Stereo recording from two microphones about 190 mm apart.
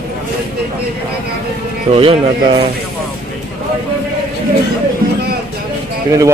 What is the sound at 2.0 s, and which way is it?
Speech, 30° right (ahead or behind).